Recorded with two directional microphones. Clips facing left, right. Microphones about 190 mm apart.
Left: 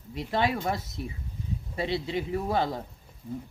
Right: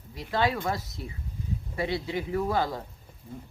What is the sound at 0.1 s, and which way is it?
Speech, 25° left (ahead or behind).